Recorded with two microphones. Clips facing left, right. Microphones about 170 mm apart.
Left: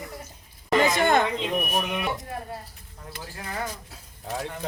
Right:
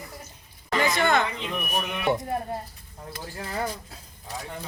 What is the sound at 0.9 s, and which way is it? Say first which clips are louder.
Speech: left 2 dB; 45° left (ahead or behind).